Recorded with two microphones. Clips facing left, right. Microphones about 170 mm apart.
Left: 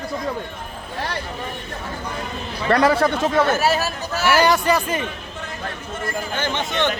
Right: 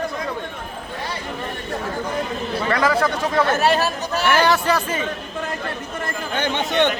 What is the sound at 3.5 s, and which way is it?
Speech, 5° left (ahead or behind).